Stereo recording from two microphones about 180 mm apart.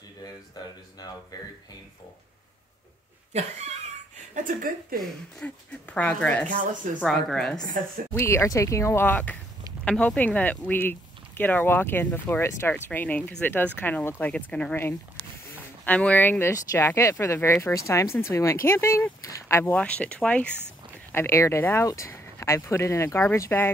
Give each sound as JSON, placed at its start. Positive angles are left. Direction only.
{"t": 0.6, "sound": "speech", "side_deg": 20}
{"t": 3.3, "sound": "cat", "side_deg": -40}
{"t": 4.9, "sound": "a woman's voice", "side_deg": 5}
{"t": 8.1, "sound": "speech", "side_deg": 15}